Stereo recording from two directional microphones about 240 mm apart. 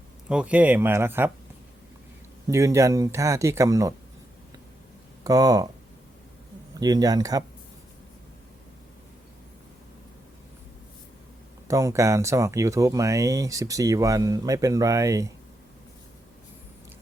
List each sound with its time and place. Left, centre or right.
0.3 s speech: centre
2.5 s speech: centre
5.2 s speech: centre
6.7 s speech: centre
11.7 s speech: centre